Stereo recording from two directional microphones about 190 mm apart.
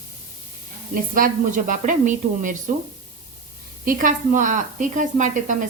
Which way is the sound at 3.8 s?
45° right (ahead or behind).